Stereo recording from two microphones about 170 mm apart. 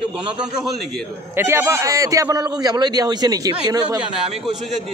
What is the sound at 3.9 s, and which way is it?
Speech, centre (ahead or behind).